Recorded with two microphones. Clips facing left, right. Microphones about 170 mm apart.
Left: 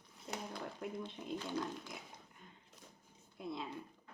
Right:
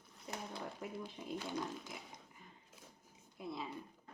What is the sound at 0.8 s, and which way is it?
Speech, 5° right (ahead or behind).